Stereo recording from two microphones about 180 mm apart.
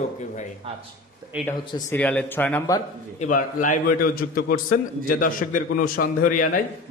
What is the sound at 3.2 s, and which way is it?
A man's voice, 45° left (ahead or behind).